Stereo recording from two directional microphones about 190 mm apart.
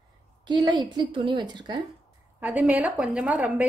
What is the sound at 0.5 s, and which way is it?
A woman's voice, 25° right (ahead or behind).